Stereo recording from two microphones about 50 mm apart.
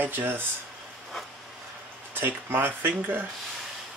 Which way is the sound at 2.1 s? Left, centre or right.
Right.